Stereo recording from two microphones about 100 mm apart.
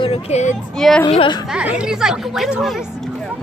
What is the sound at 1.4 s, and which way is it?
Speech, 10° right (ahead or behind).